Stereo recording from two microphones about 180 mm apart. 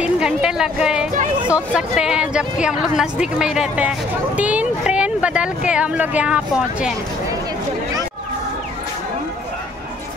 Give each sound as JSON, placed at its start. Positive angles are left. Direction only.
{"t": 0.0, "sound": "a woman's voice", "side_deg": -5}